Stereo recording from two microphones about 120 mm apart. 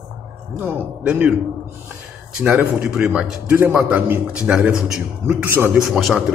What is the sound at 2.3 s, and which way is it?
A man's voice, 10° right (ahead or behind).